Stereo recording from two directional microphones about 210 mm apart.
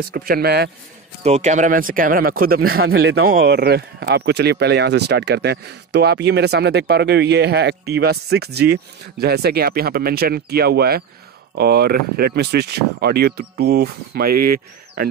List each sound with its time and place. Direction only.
0.1 s speech: 45° right (ahead or behind)
1.2 s speech: 35° right (ahead or behind); by 3.3 s 60° right (ahead or behind)
3.3 s speech: 50° right (ahead or behind)